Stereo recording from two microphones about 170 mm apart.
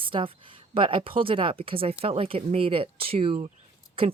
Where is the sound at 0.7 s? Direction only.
30° right (ahead or behind).